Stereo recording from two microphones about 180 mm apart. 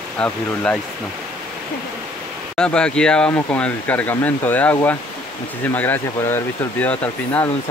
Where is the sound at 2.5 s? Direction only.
5° left (ahead or behind).